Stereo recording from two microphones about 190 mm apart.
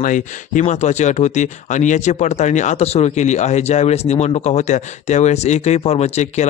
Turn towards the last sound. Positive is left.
turn(degrees=35)  # may be behind; listen again after turning